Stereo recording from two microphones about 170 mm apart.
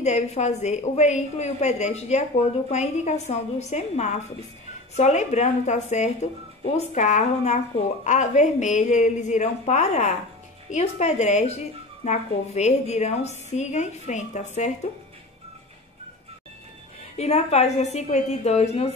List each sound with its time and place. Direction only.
0.0 s a woman's voice: 40° left (ahead or behind)
17.2 s a woman's voice: 40° left (ahead or behind)